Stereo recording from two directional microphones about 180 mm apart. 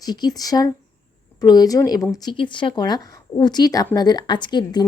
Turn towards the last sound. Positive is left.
turn(degrees=25)  # may be behind; listen again after turning